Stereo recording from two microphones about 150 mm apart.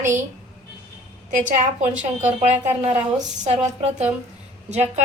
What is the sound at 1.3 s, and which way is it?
A woman's voice, 55° right (ahead or behind).